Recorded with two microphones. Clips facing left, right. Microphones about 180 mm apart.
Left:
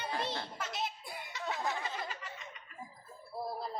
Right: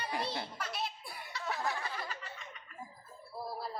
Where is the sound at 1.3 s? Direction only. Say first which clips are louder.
Even; 20° left (ahead or behind).